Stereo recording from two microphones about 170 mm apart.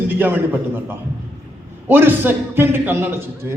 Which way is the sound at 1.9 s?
10° right (ahead or behind).